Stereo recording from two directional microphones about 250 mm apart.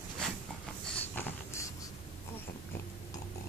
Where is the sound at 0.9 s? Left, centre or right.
Centre.